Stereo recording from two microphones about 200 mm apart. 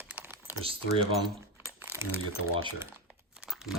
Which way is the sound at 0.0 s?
10° right (ahead or behind).